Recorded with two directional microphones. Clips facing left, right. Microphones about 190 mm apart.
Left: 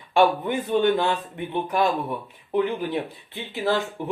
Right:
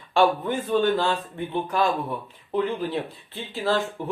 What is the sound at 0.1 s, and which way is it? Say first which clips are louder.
A man's voice: left 1 dB; 15° left (ahead or behind).